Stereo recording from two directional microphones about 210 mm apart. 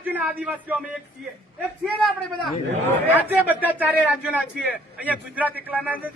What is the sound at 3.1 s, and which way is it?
A man's voice, 10° right (ahead or behind).